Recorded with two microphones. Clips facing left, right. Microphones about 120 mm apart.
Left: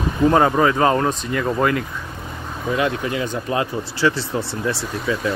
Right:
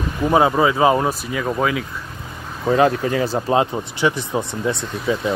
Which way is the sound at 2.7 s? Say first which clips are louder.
Right 5 dB; 35° right (ahead or behind).